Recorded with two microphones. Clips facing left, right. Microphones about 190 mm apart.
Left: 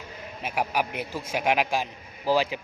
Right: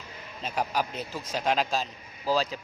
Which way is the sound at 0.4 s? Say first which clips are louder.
Left 2 dB; 10° left (ahead or behind).